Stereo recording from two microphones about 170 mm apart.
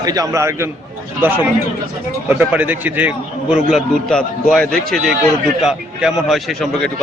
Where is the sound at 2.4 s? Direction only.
10° right (ahead or behind).